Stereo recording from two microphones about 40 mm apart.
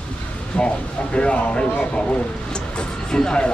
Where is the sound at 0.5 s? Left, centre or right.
Left.